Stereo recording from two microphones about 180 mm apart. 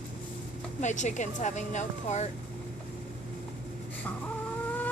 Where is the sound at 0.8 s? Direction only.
40° left (ahead or behind).